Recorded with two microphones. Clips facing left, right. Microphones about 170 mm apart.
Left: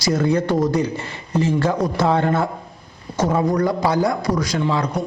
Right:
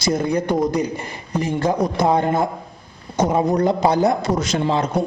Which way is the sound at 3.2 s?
20° right (ahead or behind).